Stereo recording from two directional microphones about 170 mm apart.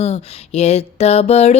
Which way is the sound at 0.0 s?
40° left (ahead or behind).